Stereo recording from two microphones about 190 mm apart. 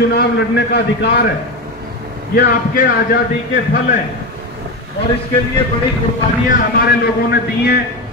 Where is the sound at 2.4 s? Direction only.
50° left (ahead or behind).